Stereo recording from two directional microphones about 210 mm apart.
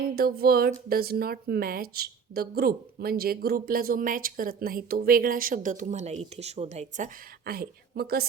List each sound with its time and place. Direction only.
0.2 s a woman's voice: 45° right (ahead or behind)